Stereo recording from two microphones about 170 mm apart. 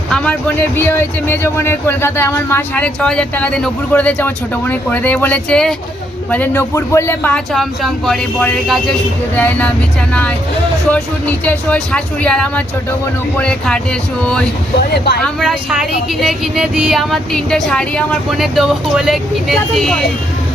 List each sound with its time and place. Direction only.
0.1 s a man's voice: 10° left (ahead or behind)
10.9 s a man's voice: 10° left (ahead or behind)
14.9 s speech: 75° left (ahead or behind)
15.2 s speech: centre (ahead or behind)